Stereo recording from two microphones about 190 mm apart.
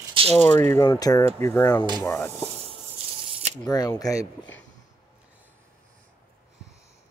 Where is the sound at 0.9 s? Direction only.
20° left (ahead or behind).